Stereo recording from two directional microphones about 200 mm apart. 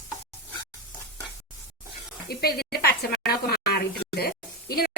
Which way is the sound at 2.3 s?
50° left (ahead or behind).